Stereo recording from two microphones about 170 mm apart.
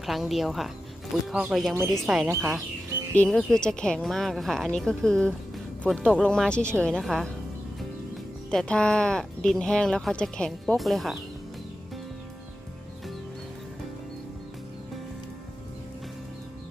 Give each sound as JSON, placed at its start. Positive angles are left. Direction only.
{"t": 0.0, "sound": "speech", "side_deg": 0}
{"t": 2.2, "sound": "speech", "side_deg": -15}
{"t": 3.2, "sound": "speech", "side_deg": 5}
{"t": 8.4, "sound": "speech", "side_deg": 5}